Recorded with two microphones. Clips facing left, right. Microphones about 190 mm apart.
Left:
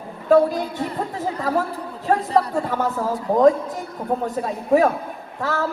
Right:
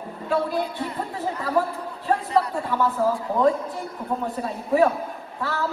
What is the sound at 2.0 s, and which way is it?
Speech, 45° left (ahead or behind).